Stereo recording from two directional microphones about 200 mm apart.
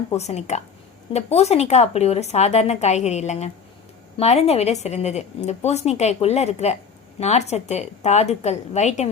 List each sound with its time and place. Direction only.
0.1 s a woman's voice: 35° left (ahead or behind)